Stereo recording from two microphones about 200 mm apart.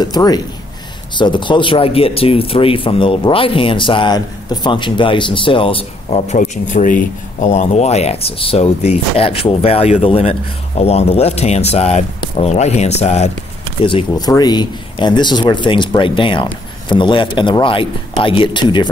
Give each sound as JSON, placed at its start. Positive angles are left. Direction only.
{"t": 0.0, "sound": "speech", "side_deg": 20}
{"t": 13.8, "sound": "speech", "side_deg": 25}